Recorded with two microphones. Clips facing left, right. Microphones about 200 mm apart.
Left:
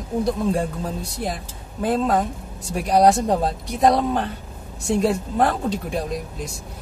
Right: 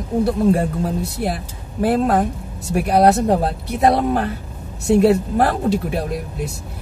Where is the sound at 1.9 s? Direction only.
65° right (ahead or behind).